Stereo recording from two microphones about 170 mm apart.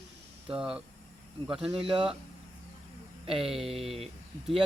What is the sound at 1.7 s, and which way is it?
Speech, 30° right (ahead or behind).